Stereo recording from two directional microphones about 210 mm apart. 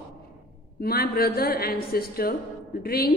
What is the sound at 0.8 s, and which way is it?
A man's voice, 45° left (ahead or behind).